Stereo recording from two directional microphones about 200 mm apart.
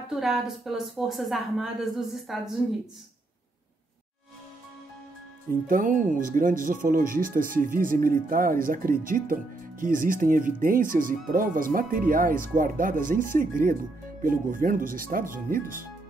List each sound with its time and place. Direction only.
0.1 s a woman's voice: centre (ahead or behind)
5.7 s speech: 40° right (ahead or behind)